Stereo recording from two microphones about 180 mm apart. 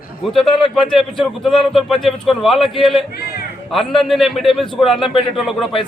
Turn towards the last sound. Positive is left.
turn(degrees=0)  # may be behind; listen again after turning